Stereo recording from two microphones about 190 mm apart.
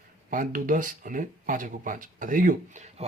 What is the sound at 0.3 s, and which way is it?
Speech, 45° right (ahead or behind).